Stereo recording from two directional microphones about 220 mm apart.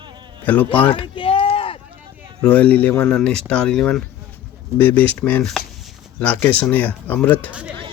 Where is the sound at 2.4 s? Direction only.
5° left (ahead or behind).